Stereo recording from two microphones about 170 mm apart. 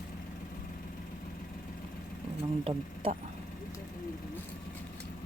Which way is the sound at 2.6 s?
35° right (ahead or behind).